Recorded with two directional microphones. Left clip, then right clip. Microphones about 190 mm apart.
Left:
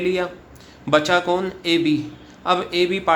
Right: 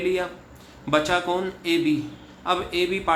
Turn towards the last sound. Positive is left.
turn(degrees=35)  # may be behind; listen again after turning